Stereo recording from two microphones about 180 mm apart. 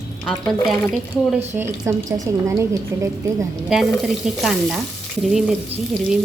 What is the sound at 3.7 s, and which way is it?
A woman's voice, centre (ahead or behind).